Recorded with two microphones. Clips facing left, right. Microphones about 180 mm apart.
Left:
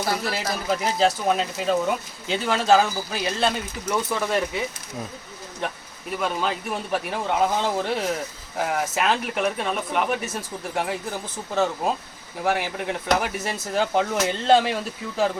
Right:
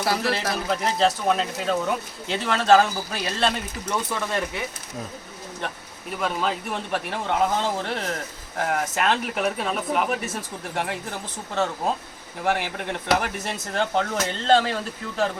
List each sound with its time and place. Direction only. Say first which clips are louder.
0.3 s speech: right 1 dB; 5° left (ahead or behind)
5.5 s speech: left 3 dB; centre (ahead or behind)